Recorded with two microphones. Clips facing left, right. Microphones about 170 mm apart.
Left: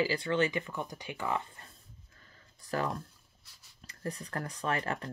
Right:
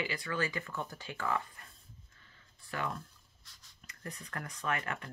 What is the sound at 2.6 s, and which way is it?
Speech, 40° left (ahead or behind).